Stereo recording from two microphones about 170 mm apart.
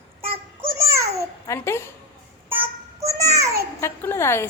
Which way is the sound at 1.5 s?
15° left (ahead or behind).